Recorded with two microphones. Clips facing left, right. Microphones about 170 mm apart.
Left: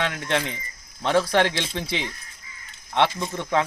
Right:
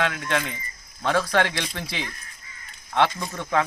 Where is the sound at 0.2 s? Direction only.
25° left (ahead or behind).